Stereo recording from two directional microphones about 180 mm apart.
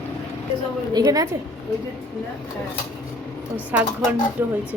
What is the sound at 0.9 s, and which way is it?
Speech, 20° right (ahead or behind).